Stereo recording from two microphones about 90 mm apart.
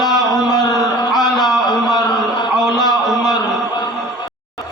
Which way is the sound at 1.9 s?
55° left (ahead or behind).